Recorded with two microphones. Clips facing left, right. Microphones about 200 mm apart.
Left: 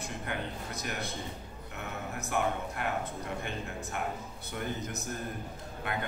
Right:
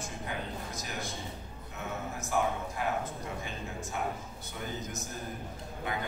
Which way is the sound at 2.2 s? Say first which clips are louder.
Even; 65° left (ahead or behind).